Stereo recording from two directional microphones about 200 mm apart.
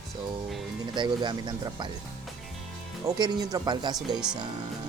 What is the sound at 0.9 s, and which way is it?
Speech, 20° right (ahead or behind).